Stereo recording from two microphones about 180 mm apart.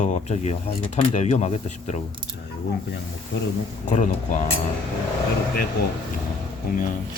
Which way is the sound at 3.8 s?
45° left (ahead or behind).